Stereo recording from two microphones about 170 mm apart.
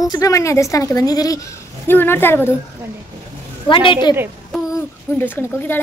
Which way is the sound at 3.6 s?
30° left (ahead or behind).